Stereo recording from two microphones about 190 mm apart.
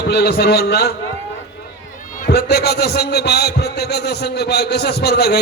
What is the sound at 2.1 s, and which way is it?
A man's voice, 55° left (ahead or behind).